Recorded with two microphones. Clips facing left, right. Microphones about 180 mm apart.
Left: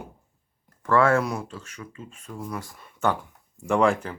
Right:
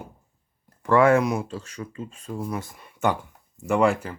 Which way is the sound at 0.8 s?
15° right (ahead or behind).